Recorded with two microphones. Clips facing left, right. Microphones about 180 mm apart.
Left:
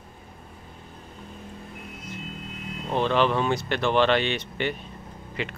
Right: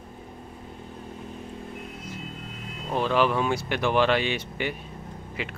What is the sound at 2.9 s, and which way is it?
Speech, 5° right (ahead or behind).